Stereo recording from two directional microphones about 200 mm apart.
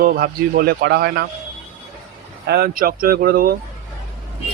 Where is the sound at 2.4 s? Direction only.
50° right (ahead or behind).